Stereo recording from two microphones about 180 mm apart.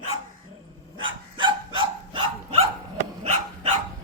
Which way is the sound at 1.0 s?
25° right (ahead or behind).